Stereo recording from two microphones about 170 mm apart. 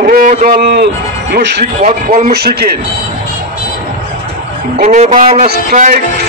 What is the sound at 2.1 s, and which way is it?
Speech, 60° right (ahead or behind).